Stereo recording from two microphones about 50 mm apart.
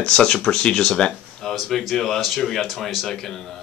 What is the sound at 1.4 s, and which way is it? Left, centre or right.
Speech, centre.